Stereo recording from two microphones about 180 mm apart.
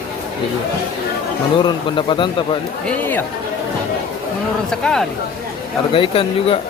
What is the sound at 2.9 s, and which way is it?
Speech, 10° left (ahead or behind).